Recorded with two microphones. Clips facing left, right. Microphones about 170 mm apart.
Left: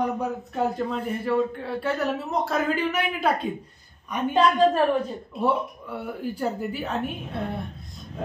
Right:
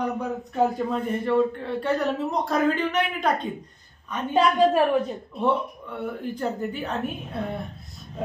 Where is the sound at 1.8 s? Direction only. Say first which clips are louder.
Right 2 dB; 5° left (ahead or behind).